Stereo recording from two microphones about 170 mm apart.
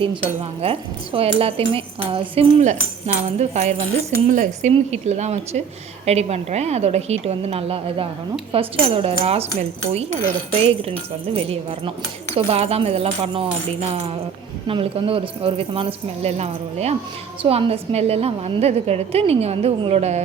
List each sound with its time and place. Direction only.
0.0 s a woman's voice: 30° right (ahead or behind)